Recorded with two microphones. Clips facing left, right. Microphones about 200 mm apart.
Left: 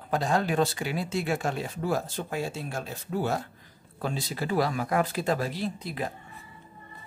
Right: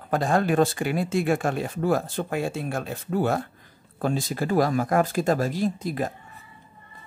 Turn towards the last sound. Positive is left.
turn(degrees=-45)  # may be behind; listen again after turning